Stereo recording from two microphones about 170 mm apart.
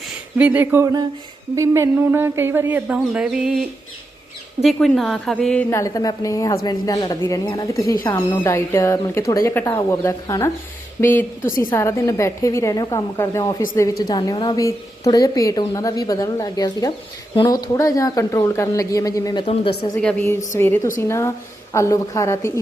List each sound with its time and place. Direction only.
0.3 s speech: 10° right (ahead or behind)
4.6 s a woman's voice: centre (ahead or behind)
5.7 s a woman's voice: 20° left (ahead or behind)
20.0 s speech: 5° left (ahead or behind)